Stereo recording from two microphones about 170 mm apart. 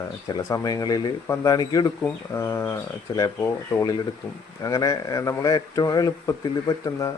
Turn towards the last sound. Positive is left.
turn(degrees=20)  # may be behind; listen again after turning